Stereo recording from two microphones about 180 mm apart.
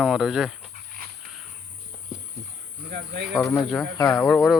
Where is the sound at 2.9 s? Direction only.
65° right (ahead or behind).